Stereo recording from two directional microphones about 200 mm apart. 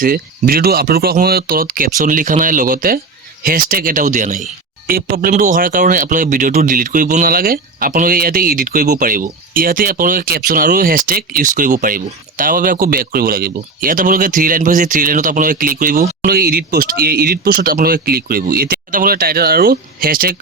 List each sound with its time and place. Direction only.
0.0 s speech: 45° right (ahead or behind)
4.9 s speech: 50° right (ahead or behind)